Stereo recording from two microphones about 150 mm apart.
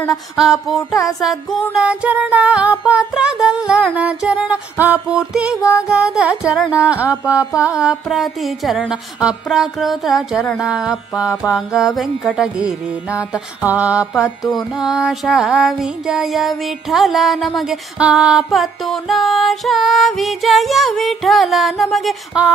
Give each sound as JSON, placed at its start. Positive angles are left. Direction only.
{"t": 0.4, "sound": "music", "side_deg": 0}
{"t": 2.8, "sound": "a sound", "side_deg": -5}
{"t": 7.6, "sound": "music", "side_deg": -10}
{"t": 13.3, "sound": "a sound", "side_deg": -10}
{"t": 14.4, "sound": "music", "side_deg": 25}
{"t": 14.7, "sound": "music", "side_deg": -5}